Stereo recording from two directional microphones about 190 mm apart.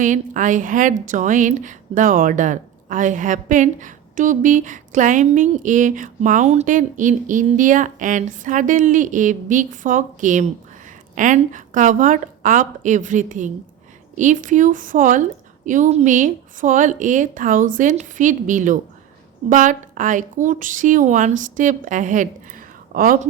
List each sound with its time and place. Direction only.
0.0 s a woman's voice: 40° right (ahead or behind)